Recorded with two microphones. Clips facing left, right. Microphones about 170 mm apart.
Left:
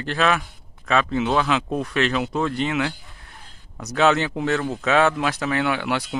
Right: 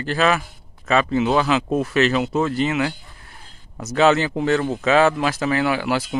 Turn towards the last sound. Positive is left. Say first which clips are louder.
# right 3 dB
turn(degrees=0)  # may be behind; listen again after turning